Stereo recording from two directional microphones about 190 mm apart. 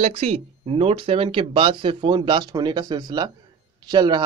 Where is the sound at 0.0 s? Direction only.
35° right (ahead or behind).